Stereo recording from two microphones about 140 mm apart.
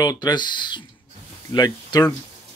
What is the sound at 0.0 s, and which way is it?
Speech, 25° left (ahead or behind).